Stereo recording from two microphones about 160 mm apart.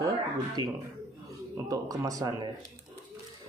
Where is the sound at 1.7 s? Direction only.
20° right (ahead or behind).